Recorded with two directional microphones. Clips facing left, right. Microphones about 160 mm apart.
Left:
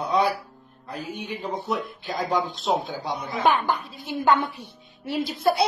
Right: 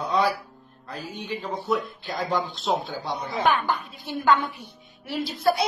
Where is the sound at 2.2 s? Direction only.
45° left (ahead or behind).